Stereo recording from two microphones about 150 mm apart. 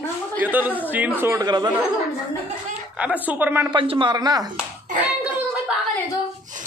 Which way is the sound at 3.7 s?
35° right (ahead or behind).